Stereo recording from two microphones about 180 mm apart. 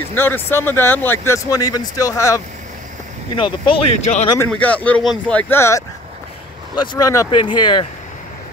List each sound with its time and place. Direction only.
0.1 s speech: 10° left (ahead or behind)
3.6 s speech: 35° left (ahead or behind)
4.5 s speech: 10° left (ahead or behind); by 7.8 s 25° left (ahead or behind)